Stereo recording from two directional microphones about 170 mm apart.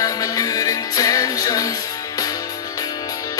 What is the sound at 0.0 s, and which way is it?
Music, 20° left (ahead or behind).